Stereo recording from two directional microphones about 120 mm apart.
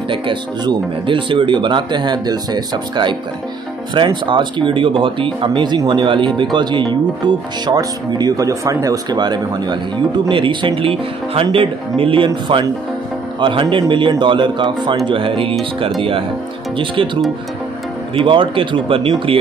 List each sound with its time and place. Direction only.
0.1 s speech: 45° right (ahead or behind)
13.4 s speech: 45° right (ahead or behind)